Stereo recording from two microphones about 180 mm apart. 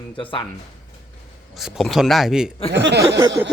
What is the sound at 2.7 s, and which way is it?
Speech, 70° right (ahead or behind).